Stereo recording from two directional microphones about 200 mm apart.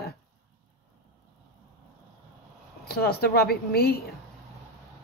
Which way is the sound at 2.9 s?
50° left (ahead or behind).